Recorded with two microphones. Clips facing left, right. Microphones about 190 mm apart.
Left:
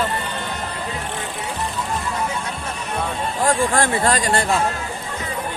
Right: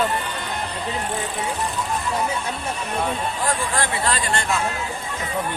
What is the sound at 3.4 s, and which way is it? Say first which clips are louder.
Speech: left 7 dB; 45° left (ahead or behind).